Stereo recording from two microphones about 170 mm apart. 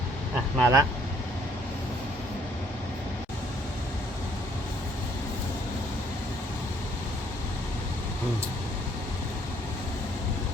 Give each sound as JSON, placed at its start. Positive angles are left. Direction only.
{"t": 0.6, "sound": "speech", "side_deg": -15}